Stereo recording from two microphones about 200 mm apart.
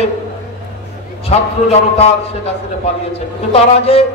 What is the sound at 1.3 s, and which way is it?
A man's voice, 35° left (ahead or behind).